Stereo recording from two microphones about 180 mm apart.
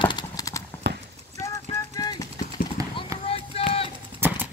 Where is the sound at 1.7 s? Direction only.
20° left (ahead or behind).